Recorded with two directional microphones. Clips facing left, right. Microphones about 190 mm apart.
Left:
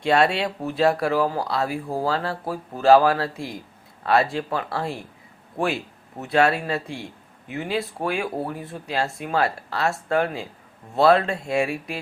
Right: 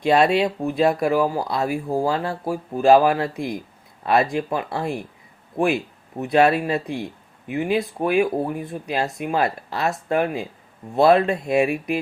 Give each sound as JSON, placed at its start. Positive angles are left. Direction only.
{"t": 0.0, "sound": "speech", "side_deg": -20}